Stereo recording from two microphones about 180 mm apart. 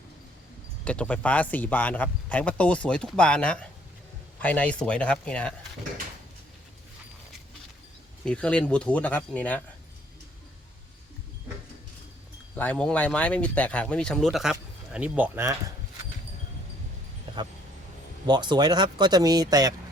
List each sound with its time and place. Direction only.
0.9 s speech: 5° left (ahead or behind)
8.2 s speech: 5° left (ahead or behind)
12.5 s speech: 5° left (ahead or behind); by 15.5 s 10° right (ahead or behind)
18.3 s speech: 25° right (ahead or behind)